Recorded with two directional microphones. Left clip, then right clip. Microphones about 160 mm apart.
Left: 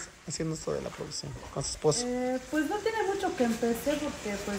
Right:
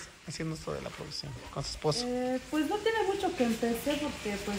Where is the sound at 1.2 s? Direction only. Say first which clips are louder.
Left 2 dB; 25° left (ahead or behind).